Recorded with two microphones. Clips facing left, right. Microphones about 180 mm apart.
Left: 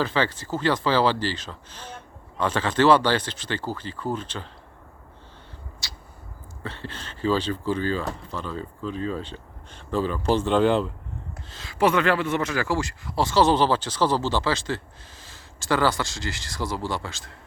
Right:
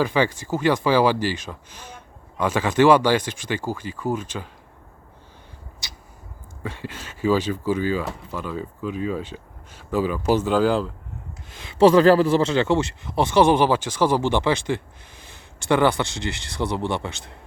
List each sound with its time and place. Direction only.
0.0 s speech: 15° right (ahead or behind)
5.8 s a sound: 15° right (ahead or behind)
6.6 s speech: 10° right (ahead or behind)
11.4 s a man's voice: 15° right (ahead or behind)